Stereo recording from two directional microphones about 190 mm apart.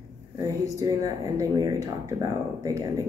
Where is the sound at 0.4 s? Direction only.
20° right (ahead or behind).